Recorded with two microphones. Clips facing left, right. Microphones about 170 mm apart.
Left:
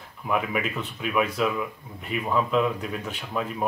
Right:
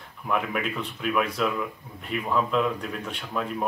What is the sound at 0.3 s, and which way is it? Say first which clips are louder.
Speech: left 1 dB; 5° left (ahead or behind).